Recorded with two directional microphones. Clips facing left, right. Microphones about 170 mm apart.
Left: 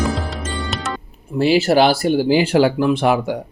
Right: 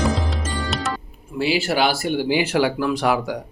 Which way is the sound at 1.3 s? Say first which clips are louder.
Left 7 dB; 45° left (ahead or behind).